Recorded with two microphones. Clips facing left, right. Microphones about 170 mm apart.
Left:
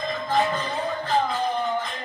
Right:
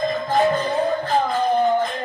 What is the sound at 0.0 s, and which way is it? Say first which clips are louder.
Music: right 5 dB; 40° right (ahead or behind).